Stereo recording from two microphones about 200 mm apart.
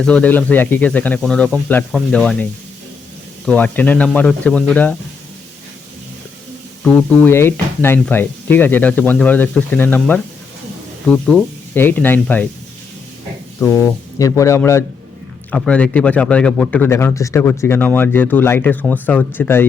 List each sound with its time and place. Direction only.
0.0 s speech: 5° left (ahead or behind)
7.3 s speech: 10° left (ahead or behind)
13.6 s speech: 15° left (ahead or behind)